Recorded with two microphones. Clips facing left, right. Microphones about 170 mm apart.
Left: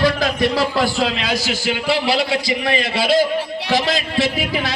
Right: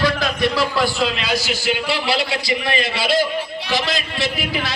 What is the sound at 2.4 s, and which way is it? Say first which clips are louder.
A man's voice: left 2 dB; 50° left (ahead or behind).